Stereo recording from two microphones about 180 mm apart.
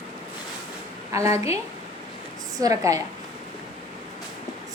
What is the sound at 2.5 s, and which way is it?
Speech, 20° right (ahead or behind).